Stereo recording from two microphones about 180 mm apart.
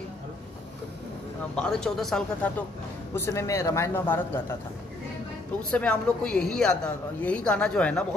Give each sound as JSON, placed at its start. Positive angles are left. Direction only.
{"t": 1.5, "sound": "speech", "side_deg": 5}
{"t": 3.2, "sound": "a man's voice", "side_deg": 15}
{"t": 5.6, "sound": "speech", "side_deg": 5}